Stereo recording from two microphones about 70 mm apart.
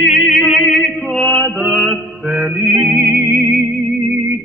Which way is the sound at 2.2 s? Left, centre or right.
Centre.